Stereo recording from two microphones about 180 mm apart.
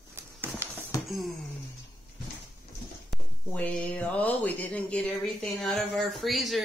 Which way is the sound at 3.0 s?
5° left (ahead or behind).